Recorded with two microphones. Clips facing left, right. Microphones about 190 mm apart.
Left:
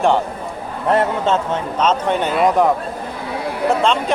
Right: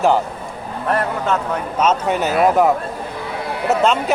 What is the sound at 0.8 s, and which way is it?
Speech, 20° left (ahead or behind).